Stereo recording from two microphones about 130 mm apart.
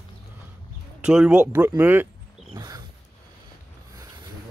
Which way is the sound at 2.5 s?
30° right (ahead or behind).